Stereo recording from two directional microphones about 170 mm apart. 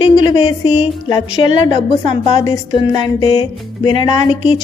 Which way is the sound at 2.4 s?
25° left (ahead or behind).